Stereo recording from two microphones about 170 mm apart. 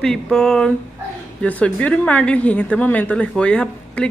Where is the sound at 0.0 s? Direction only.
5° left (ahead or behind).